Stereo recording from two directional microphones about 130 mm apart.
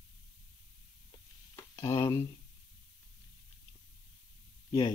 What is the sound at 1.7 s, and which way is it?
Speech, 35° left (ahead or behind).